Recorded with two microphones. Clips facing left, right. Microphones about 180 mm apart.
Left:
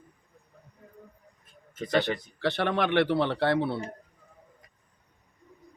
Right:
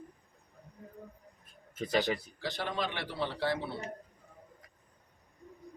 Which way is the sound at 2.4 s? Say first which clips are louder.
Left 8 dB; 65° left (ahead or behind).